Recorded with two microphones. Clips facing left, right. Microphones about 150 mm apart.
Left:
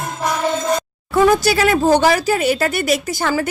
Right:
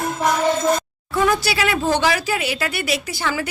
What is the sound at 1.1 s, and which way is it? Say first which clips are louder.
Speech: left 6 dB; 45° left (ahead or behind).